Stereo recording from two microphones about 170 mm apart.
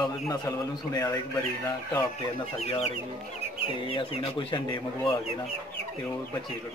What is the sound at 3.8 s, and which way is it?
Speech, 35° left (ahead or behind).